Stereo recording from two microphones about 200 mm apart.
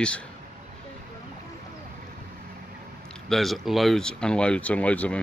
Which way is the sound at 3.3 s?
Centre (ahead or behind).